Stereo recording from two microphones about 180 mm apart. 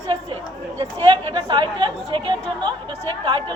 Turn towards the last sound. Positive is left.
turn(degrees=-25)  # may be behind; listen again after turning